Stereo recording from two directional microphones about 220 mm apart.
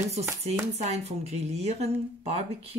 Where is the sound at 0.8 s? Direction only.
30° right (ahead or behind).